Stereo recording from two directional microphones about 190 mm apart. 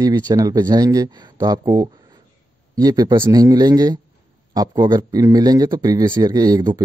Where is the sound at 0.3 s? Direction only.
20° right (ahead or behind).